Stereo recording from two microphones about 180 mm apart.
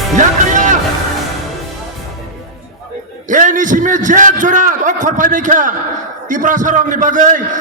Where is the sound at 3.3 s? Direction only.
45° right (ahead or behind).